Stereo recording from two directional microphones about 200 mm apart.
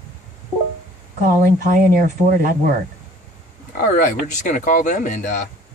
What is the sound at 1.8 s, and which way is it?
Speech, 45° right (ahead or behind).